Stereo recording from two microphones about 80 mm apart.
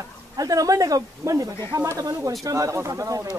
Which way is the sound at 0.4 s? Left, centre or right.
Right.